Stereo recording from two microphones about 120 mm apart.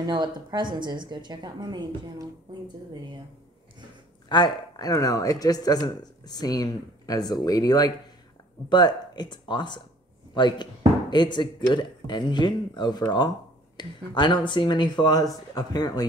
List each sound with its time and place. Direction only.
0.0 s a woman's voice: 35° right (ahead or behind)
4.3 s speech: 35° left (ahead or behind)